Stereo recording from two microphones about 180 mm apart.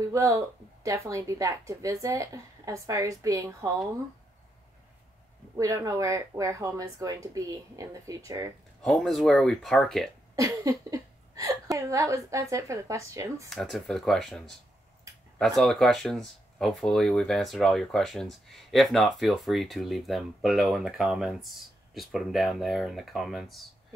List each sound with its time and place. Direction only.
0.1 s a woman's voice: 15° right (ahead or behind)
5.6 s a woman's voice: 15° right (ahead or behind)
8.8 s speech: centre (ahead or behind)
10.3 s a woman's voice: 20° right (ahead or behind)
13.5 s speech: centre (ahead or behind)